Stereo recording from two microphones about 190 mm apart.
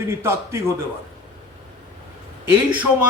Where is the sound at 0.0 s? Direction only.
15° right (ahead or behind).